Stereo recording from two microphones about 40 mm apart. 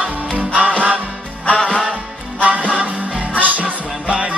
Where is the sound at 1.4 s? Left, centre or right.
Left.